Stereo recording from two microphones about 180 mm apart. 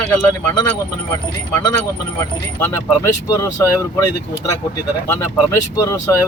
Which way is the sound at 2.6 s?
15° left (ahead or behind).